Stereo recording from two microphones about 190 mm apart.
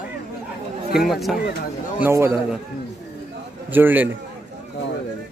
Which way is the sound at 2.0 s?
15° right (ahead or behind).